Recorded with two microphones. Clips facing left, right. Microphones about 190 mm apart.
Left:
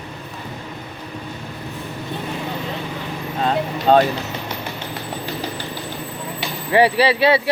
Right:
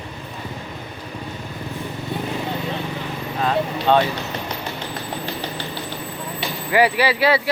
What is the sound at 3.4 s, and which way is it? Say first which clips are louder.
Vehicle: left 1 dB; 40° left (ahead or behind).